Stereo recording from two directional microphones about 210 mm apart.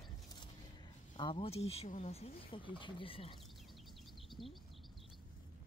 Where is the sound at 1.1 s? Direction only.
25° left (ahead or behind).